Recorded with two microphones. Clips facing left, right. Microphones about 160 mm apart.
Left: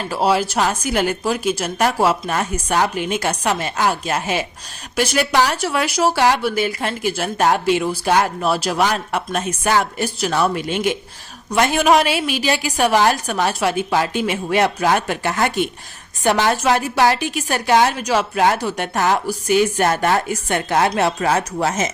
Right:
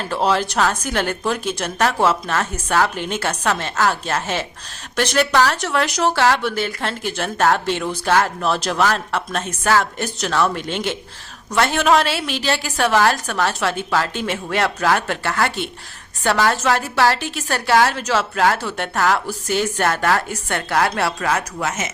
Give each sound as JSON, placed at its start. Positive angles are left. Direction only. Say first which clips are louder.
{"t": 0.0, "sound": "a woman's voice", "louder": "left 1 dB", "side_deg": 10}